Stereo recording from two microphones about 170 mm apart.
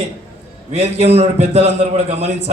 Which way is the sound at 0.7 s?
40° right (ahead or behind).